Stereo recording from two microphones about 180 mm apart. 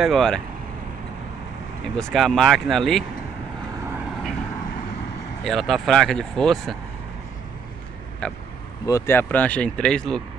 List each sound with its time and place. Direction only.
0.0 s speech: centre (ahead or behind)
2.0 s speech: centre (ahead or behind)
5.4 s speech: centre (ahead or behind)
8.2 s speech: 5° left (ahead or behind)